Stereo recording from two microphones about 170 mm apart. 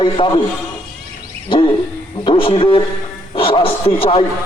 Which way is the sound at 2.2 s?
30° left (ahead or behind).